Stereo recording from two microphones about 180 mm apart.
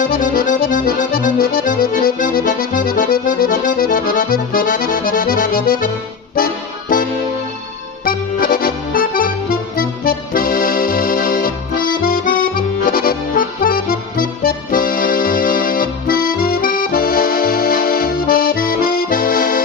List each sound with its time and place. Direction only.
0.0 s accordion: 50° left (ahead or behind)
8.0 s accordion: 55° left (ahead or behind)